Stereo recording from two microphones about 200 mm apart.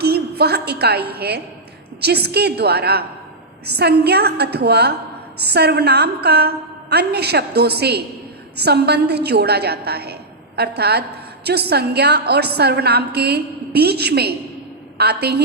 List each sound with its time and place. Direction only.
0.0 s a woman's voice: 55° right (ahead or behind)